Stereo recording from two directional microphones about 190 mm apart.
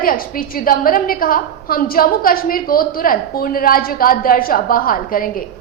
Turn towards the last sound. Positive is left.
turn(degrees=50)  # may be behind; listen again after turning